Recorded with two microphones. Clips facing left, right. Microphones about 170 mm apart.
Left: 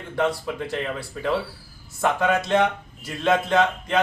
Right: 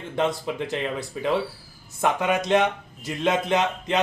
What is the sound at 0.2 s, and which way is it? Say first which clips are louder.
A man's voice: left 1 dB; 20° right (ahead or behind).